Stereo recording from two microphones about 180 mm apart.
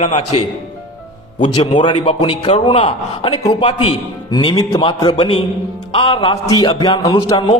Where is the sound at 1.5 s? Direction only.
25° left (ahead or behind).